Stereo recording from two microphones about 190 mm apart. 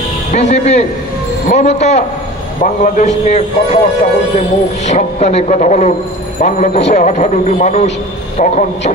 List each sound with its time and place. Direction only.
0.3 s speech: 35° left (ahead or behind)